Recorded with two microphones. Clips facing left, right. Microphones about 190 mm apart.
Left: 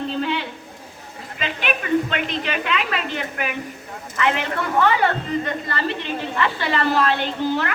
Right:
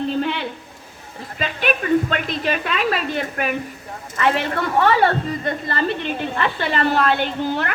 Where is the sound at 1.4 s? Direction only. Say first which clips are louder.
Right 4 dB; 45° right (ahead or behind).